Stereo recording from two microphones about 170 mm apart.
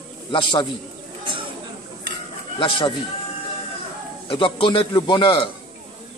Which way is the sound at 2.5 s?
30° left (ahead or behind).